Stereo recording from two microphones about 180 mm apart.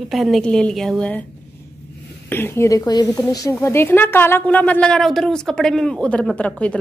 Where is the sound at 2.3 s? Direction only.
15° left (ahead or behind).